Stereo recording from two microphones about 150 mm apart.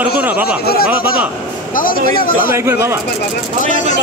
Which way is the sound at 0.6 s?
90° left.